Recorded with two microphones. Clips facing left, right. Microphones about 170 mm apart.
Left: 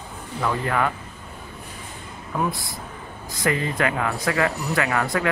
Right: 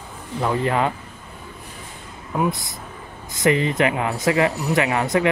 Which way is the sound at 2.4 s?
20° right (ahead or behind).